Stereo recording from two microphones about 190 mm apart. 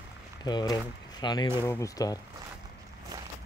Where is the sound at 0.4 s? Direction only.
20° left (ahead or behind).